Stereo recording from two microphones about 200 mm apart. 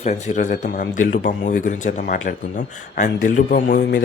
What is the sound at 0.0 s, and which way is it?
Speech, 35° left (ahead or behind).